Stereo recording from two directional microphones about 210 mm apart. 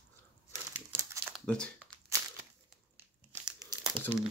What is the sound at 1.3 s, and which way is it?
Speech, 5° left (ahead or behind).